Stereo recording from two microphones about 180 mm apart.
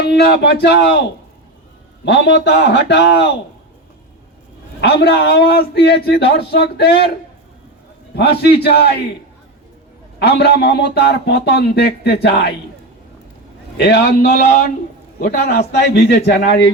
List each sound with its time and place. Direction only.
0.1 s speech: 65° left (ahead or behind)
2.0 s speech: 70° left (ahead or behind)
4.8 s a man's voice: 65° left (ahead or behind)
8.1 s a man's voice: 65° left (ahead or behind)
10.2 s a man's voice: 65° left (ahead or behind)
13.7 s speech: 65° left (ahead or behind)